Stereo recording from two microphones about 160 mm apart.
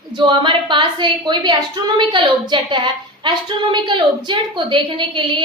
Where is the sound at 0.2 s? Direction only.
30° right (ahead or behind).